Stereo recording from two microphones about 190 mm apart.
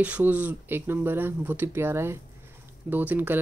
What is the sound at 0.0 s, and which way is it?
Speech, 10° right (ahead or behind).